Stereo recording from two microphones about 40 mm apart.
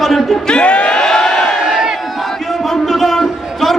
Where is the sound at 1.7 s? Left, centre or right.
Centre.